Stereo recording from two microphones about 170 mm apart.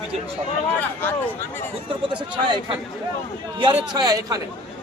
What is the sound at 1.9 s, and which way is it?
A man's voice, 30° right (ahead or behind).